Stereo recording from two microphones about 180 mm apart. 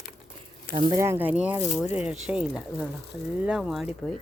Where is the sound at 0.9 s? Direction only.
15° right (ahead or behind).